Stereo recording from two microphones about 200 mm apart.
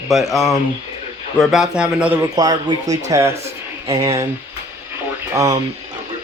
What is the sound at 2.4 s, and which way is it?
Speech, 20° right (ahead or behind).